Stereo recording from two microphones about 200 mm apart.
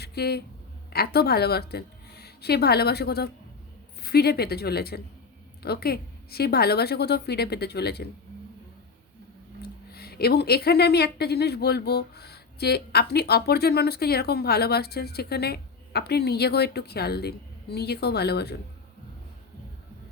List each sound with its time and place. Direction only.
0.0 s a woman's voice: 55° left (ahead or behind)
9.9 s speech: 50° left (ahead or behind)